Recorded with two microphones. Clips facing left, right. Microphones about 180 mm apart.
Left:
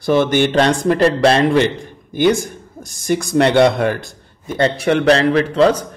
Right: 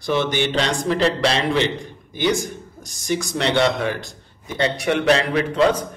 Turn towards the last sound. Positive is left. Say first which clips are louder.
# left 5 dB
turn(degrees=35)  # may be behind; listen again after turning